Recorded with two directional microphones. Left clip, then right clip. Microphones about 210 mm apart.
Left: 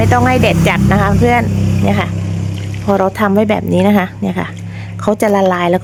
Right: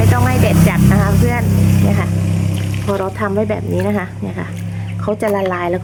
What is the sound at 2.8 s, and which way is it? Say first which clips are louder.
Speech: left 6 dB; 50° left (ahead or behind).